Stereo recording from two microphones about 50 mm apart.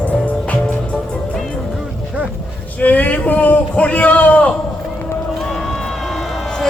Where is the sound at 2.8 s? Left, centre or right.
Left.